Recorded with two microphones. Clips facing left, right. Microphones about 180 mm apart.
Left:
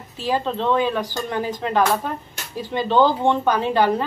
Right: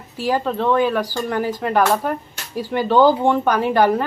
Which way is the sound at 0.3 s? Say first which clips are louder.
Right 2 dB; 20° left (ahead or behind).